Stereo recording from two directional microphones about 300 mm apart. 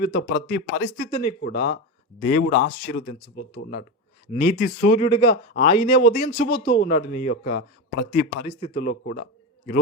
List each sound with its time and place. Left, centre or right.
0.0 s speech: left
1.1 s speech: centre
1.5 s speech: left
4.3 s speech: left
5.0 s speech: centre